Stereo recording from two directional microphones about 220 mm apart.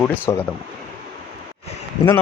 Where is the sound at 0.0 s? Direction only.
10° left (ahead or behind).